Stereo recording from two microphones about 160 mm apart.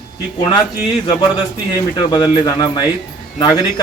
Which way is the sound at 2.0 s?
25° left (ahead or behind).